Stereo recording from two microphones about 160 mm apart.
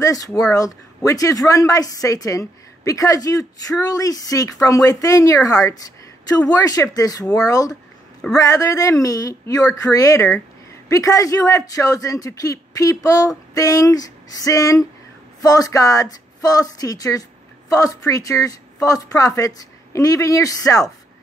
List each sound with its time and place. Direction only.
0.4 s speech: 20° left (ahead or behind)